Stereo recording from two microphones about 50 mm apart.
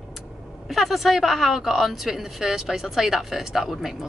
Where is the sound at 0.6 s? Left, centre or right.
Centre.